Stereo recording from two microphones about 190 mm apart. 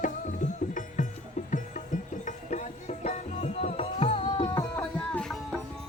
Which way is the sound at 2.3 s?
40° left (ahead or behind).